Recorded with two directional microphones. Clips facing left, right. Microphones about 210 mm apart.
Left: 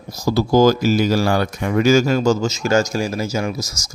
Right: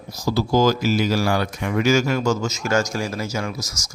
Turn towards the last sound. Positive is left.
turn(degrees=5)  # may be behind; listen again after turning